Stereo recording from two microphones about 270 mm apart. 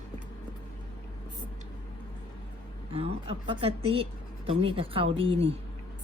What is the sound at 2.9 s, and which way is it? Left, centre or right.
A woman's voice, right.